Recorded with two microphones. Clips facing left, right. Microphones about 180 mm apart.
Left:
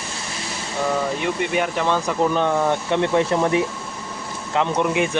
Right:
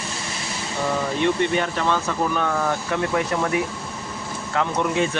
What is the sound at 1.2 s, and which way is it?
Speech, 10° left (ahead or behind).